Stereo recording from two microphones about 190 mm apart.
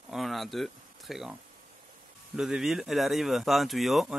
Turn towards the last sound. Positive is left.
turn(degrees=0)  # may be behind; listen again after turning